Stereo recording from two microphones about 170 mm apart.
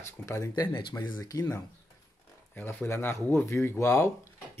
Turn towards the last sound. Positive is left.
turn(degrees=15)  # may be behind; listen again after turning